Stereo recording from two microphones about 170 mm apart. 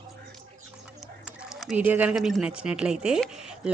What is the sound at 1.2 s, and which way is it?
A woman's voice, centre (ahead or behind).